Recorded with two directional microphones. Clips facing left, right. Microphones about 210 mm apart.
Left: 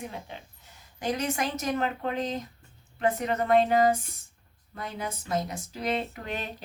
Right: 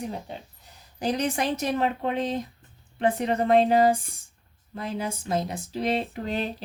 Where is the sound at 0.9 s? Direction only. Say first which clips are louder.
Right 3 dB; 35° right (ahead or behind).